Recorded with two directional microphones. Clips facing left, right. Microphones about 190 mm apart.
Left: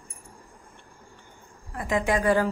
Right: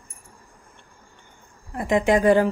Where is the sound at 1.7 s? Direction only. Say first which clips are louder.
Right 6 dB; 20° right (ahead or behind).